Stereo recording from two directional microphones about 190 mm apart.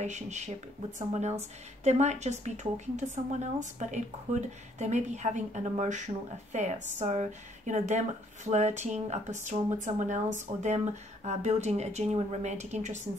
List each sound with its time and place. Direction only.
0.0 s a woman's voice: 40° right (ahead or behind)